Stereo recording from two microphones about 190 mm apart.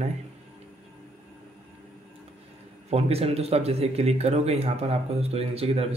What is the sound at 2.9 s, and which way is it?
Speech, 30° right (ahead or behind).